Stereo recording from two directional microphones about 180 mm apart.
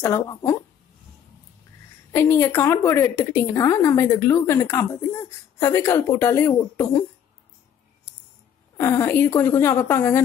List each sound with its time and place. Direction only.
0.0 s speech: 15° left (ahead or behind)
2.1 s speech: 10° left (ahead or behind)
8.7 s speech: 15° left (ahead or behind)